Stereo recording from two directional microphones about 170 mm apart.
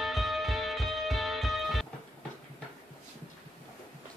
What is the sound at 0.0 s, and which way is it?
Music, centre (ahead or behind).